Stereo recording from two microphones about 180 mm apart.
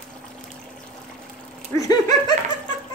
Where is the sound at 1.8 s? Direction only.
20° left (ahead or behind).